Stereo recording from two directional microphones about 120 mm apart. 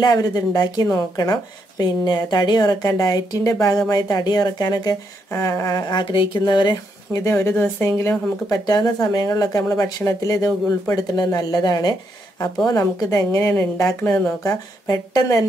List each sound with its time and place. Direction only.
0.0 s a woman's voice: 35° left (ahead or behind)
7.2 s a woman's voice: 25° left (ahead or behind)
8.5 s a woman's voice: 35° left (ahead or behind)